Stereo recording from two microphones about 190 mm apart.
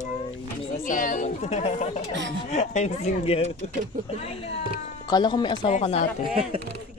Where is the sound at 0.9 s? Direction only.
45° left (ahead or behind).